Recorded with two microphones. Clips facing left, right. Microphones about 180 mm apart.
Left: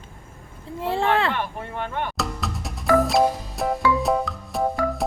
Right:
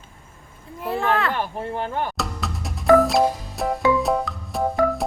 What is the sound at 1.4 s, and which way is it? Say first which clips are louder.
Speech: right 3 dB; 30° right (ahead or behind).